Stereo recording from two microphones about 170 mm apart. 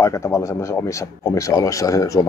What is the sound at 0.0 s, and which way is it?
Speech, 20° left (ahead or behind).